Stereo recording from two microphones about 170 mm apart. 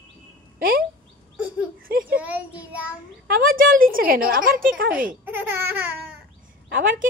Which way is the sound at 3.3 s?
55° right (ahead or behind).